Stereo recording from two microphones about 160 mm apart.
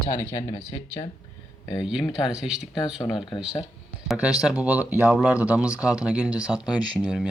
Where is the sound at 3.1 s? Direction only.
30° left (ahead or behind).